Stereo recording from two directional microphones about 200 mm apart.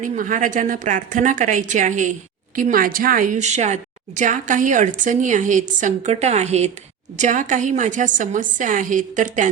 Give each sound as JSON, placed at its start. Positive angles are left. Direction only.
{"t": 0.0, "sound": "speech", "side_deg": -40}